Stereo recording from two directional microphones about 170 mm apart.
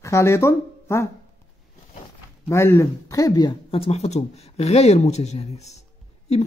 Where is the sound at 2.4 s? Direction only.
15° left (ahead or behind).